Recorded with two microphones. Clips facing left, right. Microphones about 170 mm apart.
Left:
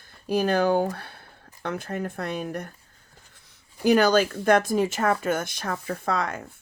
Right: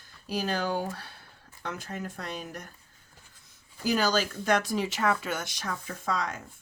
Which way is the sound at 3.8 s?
60° left (ahead or behind).